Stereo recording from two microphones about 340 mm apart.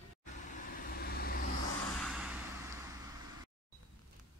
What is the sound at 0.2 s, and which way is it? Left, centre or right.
Vehicle, left.